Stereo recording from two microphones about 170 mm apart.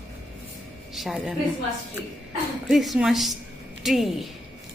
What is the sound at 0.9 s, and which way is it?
Speech, centre (ahead or behind).